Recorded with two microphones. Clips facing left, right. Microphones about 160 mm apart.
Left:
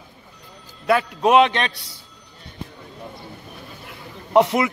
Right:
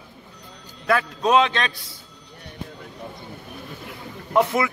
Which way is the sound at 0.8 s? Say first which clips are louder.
Left 3 dB; 15° left (ahead or behind).